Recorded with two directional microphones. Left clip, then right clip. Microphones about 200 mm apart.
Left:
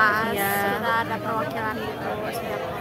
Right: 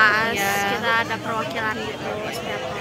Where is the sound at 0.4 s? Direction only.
25° left (ahead or behind).